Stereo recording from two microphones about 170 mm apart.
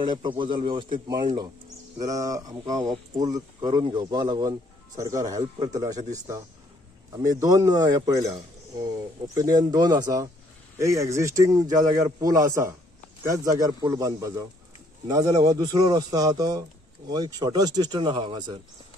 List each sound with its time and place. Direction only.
0.0 s a man's voice: 25° right (ahead or behind)